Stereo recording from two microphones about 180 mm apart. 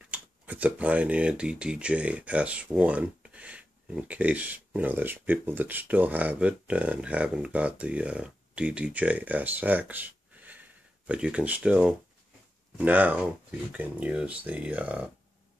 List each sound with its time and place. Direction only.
0.1 s speech: 10° right (ahead or behind)